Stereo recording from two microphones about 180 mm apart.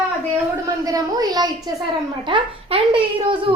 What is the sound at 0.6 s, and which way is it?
A child's voice, 20° right (ahead or behind).